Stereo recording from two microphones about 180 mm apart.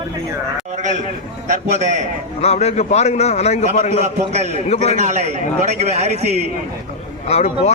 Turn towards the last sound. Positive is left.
turn(degrees=35)  # may be behind; listen again after turning